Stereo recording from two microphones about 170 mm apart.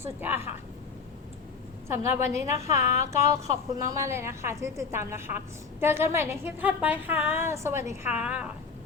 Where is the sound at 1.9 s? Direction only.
15° right (ahead or behind).